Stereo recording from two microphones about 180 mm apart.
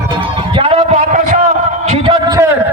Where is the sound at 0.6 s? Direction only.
30° right (ahead or behind).